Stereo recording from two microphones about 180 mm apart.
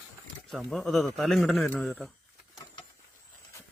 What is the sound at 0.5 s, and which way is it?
A man's voice, centre (ahead or behind).